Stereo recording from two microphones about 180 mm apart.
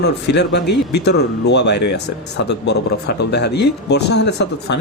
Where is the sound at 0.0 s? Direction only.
70° left (ahead or behind).